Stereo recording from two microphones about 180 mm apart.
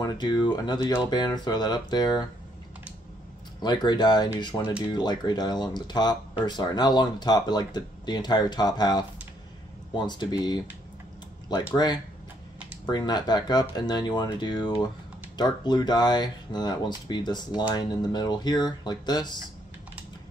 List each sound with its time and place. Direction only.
0.0 s speech: 25° left (ahead or behind)
3.6 s speech: 25° left (ahead or behind)